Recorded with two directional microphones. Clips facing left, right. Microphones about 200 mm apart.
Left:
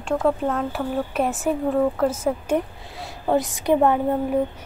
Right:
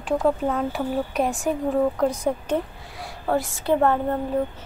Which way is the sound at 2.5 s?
20° left (ahead or behind).